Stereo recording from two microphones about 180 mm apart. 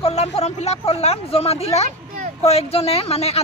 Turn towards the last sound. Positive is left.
turn(degrees=35)  # may be behind; listen again after turning